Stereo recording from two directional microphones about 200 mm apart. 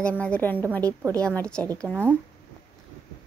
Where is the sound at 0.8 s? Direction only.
15° right (ahead or behind).